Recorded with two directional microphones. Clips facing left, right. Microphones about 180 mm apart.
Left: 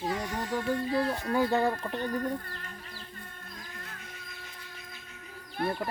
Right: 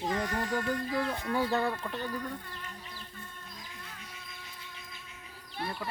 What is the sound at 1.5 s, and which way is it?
Speech, 15° left (ahead or behind).